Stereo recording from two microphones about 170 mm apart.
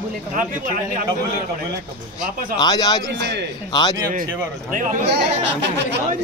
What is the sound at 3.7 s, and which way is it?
Speech, 25° left (ahead or behind).